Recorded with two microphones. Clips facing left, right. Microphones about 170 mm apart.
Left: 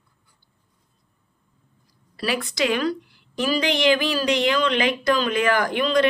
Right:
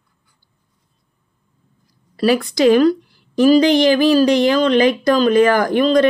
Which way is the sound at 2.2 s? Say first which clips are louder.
Right 9 dB; 40° right (ahead or behind).